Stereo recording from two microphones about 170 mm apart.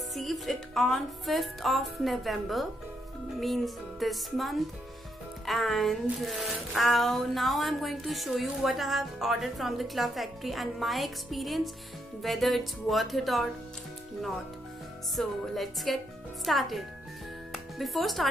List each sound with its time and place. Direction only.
0.1 s speech: centre (ahead or behind)
15.1 s speech: centre (ahead or behind)
17.5 s music: centre (ahead or behind)